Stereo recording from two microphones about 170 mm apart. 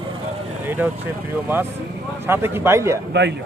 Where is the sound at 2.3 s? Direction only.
15° right (ahead or behind).